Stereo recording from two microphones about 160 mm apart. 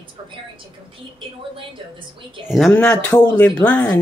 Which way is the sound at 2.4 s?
Centre (ahead or behind).